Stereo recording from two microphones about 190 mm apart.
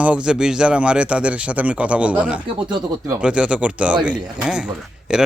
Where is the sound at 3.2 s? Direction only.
5° right (ahead or behind).